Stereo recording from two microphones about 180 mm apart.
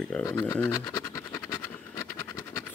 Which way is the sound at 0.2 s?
20° left (ahead or behind).